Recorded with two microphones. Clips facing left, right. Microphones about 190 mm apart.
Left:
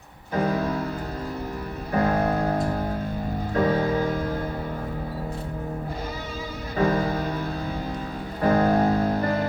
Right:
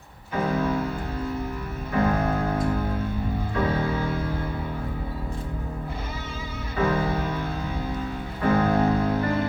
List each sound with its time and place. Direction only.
0.3 s music: 35° left (ahead or behind)
1.9 s music: 35° left (ahead or behind)
6.7 s music: 40° left (ahead or behind)
8.4 s music: 35° left (ahead or behind)